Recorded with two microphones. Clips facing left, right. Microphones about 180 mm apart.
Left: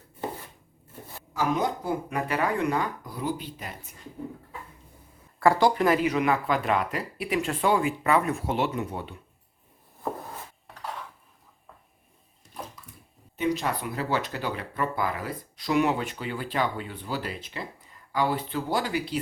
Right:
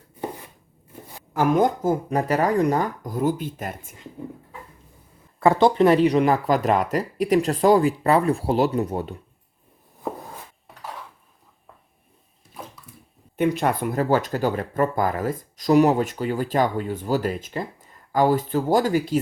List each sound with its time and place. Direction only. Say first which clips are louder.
1.3 s speech: right 7 dB; 55° right (ahead or behind)
5.4 s speech: right 5 dB; 20° right (ahead or behind); by 9.1 s 40° right (ahead or behind)
13.3 s speech: right 6 dB; 55° right (ahead or behind)